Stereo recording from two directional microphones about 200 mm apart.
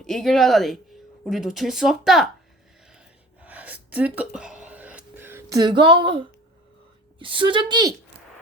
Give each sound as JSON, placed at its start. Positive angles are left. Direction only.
{"t": 0.0, "sound": "speech", "side_deg": 0}
{"t": 3.4, "sound": "a sound", "side_deg": -5}
{"t": 7.2, "sound": "a woman's voice", "side_deg": -25}